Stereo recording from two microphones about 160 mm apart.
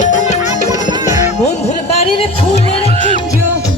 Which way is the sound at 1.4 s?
45° left (ahead or behind).